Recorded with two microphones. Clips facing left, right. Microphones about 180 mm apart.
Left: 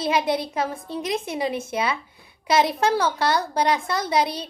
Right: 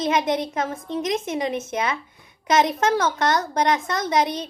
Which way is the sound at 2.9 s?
35° left (ahead or behind).